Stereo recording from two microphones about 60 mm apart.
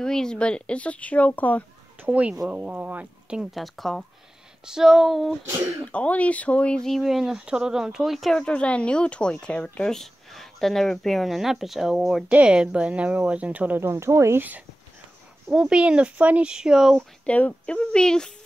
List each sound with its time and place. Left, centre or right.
0.0 s speech: centre; by 1.6 s left
2.0 s speech: centre
3.5 s speech: centre
4.6 s speech: centre
5.9 s speech: left
6.8 s speech: centre
8.4 s speech: centre
9.8 s speech: centre
12.3 s speech: centre
13.7 s speech: right
15.5 s speech: centre
16.5 s speech: centre
17.3 s speech: left